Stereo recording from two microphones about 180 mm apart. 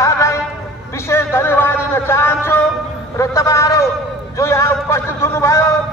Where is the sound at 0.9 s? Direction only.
15° left (ahead or behind).